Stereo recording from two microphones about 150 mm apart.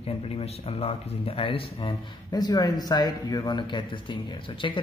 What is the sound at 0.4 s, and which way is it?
Speech, 40° left (ahead or behind).